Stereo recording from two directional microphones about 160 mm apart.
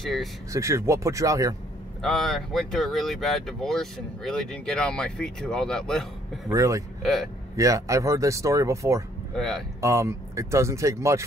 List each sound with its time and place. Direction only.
0.0 s speech: centre (ahead or behind)
0.5 s speech: 20° right (ahead or behind)
2.0 s speech: centre (ahead or behind)
6.5 s speech: 20° right (ahead or behind)
7.0 s speech: centre (ahead or behind)
7.5 s speech: 20° right (ahead or behind)